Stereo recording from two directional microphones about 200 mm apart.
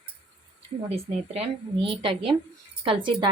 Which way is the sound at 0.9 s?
30° right (ahead or behind).